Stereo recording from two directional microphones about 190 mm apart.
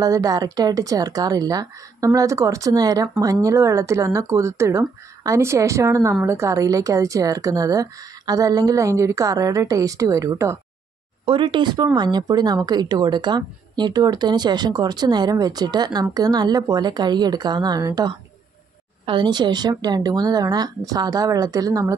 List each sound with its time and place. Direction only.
0.0 s speech: 20° right (ahead or behind)
11.2 s speech: 25° right (ahead or behind)